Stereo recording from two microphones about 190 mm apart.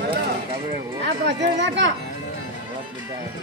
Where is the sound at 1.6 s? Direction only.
70° right (ahead or behind).